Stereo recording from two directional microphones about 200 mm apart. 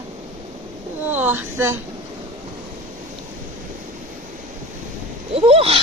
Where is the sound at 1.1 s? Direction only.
10° right (ahead or behind).